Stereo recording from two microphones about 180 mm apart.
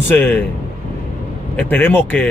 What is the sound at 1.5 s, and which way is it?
Speech, 10° left (ahead or behind).